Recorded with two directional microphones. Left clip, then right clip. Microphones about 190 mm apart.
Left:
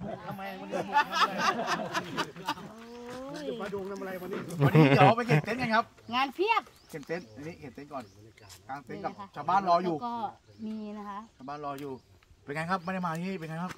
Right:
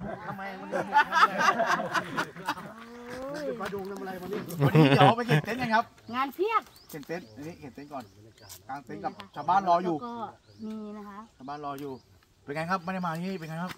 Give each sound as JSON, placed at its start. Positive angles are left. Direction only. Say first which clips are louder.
{"t": 0.0, "sound": "speech", "louder": "right 2 dB", "side_deg": 15}
{"t": 3.7, "sound": "speech", "louder": "even", "side_deg": 5}
{"t": 6.0, "sound": "speech", "louder": "left 2 dB", "side_deg": 65}
{"t": 6.9, "sound": "speech", "louder": "left 1 dB", "side_deg": 5}
{"t": 10.0, "sound": "speech", "louder": "left 3 dB", "side_deg": 70}
{"t": 11.4, "sound": "speech", "louder": "right 2 dB", "side_deg": 0}